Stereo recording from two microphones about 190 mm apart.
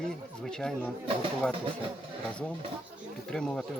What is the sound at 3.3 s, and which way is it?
Speech, 5° left (ahead or behind).